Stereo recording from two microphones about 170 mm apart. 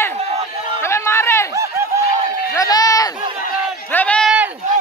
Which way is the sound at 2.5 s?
20° left (ahead or behind).